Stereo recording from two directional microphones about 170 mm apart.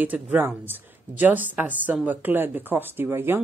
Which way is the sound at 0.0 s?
10° right (ahead or behind).